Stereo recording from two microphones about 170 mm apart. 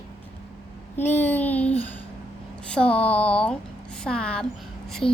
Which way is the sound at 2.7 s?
5° left (ahead or behind).